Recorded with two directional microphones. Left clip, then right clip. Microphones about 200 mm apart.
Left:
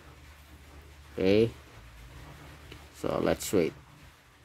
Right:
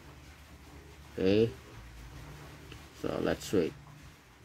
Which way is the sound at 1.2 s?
15° left (ahead or behind).